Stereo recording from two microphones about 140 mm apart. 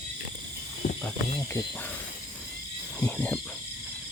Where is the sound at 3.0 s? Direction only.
10° left (ahead or behind).